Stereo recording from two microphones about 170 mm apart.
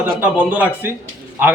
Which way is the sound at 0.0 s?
10° right (ahead or behind).